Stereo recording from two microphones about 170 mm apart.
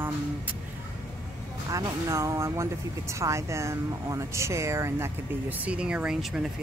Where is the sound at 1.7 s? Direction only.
20° right (ahead or behind); by 6.5 s 5° right (ahead or behind).